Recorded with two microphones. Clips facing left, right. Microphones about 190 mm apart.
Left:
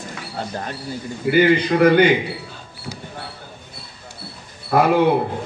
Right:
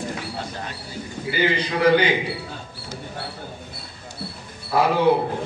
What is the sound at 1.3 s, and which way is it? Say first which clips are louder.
Speech: left 8 dB; 55° left (ahead or behind).